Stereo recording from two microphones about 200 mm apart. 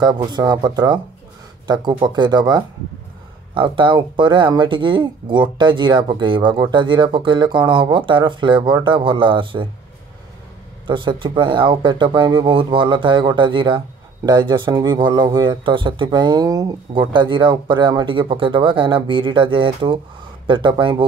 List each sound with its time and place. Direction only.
0.0 s speech: 20° right (ahead or behind)
10.9 s speech: 25° right (ahead or behind)